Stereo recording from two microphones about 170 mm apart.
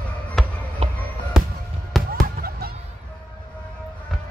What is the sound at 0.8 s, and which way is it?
Music, 40° right (ahead or behind).